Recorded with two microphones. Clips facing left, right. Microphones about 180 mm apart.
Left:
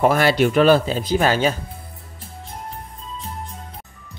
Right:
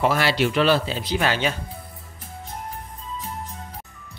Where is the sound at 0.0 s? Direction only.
50° left (ahead or behind).